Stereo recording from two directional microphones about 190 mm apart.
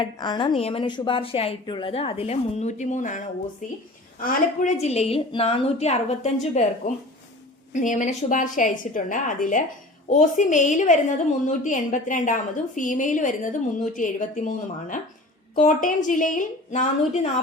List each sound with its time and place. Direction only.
0.0 s a woman's voice: 25° left (ahead or behind); by 17.2 s 40° left (ahead or behind)